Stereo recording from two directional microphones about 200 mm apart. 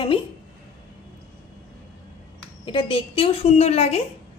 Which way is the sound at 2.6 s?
25° left (ahead or behind).